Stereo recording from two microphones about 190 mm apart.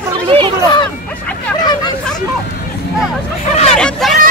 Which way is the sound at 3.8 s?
Centre (ahead or behind).